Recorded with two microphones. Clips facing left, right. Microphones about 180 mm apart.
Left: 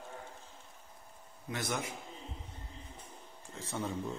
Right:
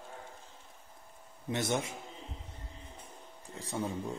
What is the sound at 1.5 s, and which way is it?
Speech, 25° right (ahead or behind).